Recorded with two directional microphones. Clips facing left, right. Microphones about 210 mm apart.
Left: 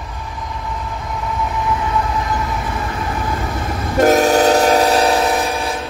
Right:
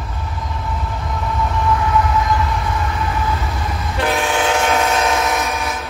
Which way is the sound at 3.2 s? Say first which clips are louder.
Left 1 dB; 45° left (ahead or behind).